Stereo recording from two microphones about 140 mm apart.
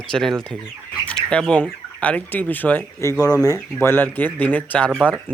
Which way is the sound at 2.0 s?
10° left (ahead or behind).